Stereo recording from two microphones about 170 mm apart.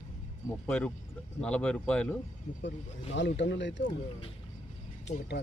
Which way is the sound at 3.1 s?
90° left.